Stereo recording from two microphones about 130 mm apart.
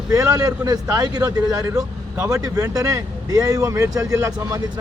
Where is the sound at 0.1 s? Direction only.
25° right (ahead or behind).